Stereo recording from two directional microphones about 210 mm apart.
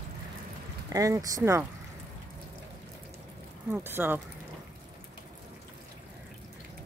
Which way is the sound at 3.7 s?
10° right (ahead or behind).